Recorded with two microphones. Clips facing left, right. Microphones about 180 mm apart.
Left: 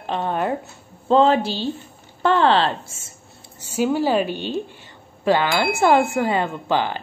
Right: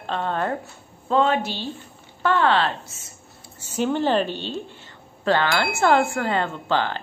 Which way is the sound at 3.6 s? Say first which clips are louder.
Left 2 dB; 10° left (ahead or behind).